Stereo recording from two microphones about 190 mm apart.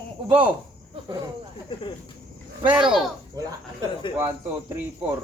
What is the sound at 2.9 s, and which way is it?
Speech, centre (ahead or behind).